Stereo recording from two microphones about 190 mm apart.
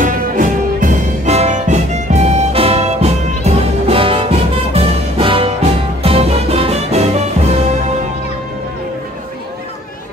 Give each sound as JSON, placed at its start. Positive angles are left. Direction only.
{"t": 0.0, "sound": "music", "side_deg": -45}